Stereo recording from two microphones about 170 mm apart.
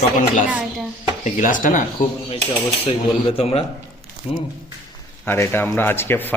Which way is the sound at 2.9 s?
35° left (ahead or behind).